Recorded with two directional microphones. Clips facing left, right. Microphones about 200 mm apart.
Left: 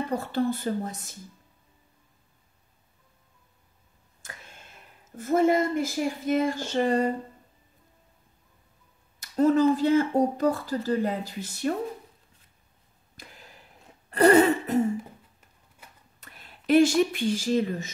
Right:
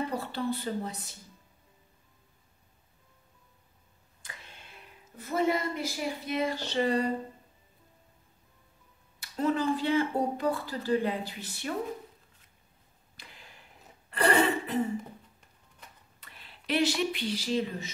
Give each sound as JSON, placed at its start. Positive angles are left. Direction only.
{"t": 0.1, "sound": "speech", "side_deg": 45}
{"t": 4.2, "sound": "a sound", "side_deg": 45}
{"t": 5.1, "sound": "speech", "side_deg": 45}
{"t": 9.2, "sound": "speech", "side_deg": 40}
{"t": 13.1, "sound": "a sound", "side_deg": 45}
{"t": 14.1, "sound": "throat clearing", "side_deg": 45}
{"t": 16.2, "sound": "speech", "side_deg": 45}